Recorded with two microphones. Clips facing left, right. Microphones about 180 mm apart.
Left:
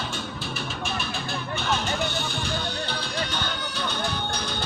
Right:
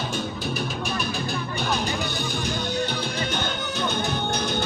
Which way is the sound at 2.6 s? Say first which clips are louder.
Right 4 dB; 20° right (ahead or behind).